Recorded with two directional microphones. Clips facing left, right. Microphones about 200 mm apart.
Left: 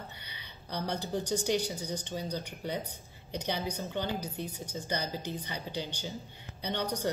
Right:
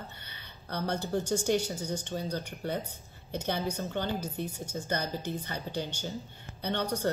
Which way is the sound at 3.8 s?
15° left (ahead or behind).